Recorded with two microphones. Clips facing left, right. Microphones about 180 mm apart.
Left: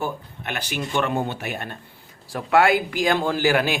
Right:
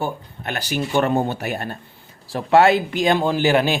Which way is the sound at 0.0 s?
35° right (ahead or behind).